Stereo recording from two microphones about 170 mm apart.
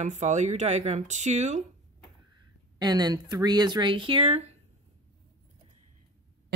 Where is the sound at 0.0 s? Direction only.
45° right (ahead or behind).